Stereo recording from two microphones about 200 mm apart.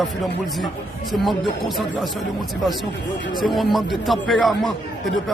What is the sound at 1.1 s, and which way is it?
Speech, centre (ahead or behind).